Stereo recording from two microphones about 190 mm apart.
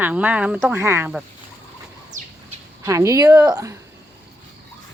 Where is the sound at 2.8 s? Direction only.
15° right (ahead or behind).